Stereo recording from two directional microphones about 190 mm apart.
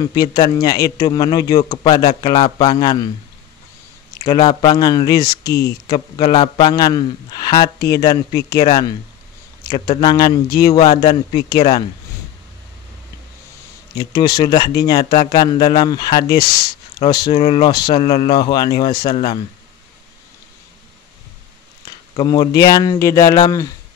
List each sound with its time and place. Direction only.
0.0 s a man's voice: 20° left (ahead or behind)
4.2 s a man's voice: 30° left (ahead or behind)
13.9 s a man's voice: 20° left (ahead or behind)
22.1 s a man's voice: 25° left (ahead or behind)